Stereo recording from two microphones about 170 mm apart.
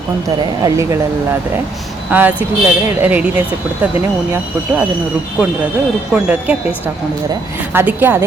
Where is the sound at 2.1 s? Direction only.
10° right (ahead or behind).